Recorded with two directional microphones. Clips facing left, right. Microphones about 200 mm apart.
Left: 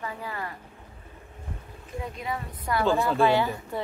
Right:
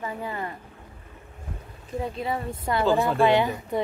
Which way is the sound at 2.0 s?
30° right (ahead or behind).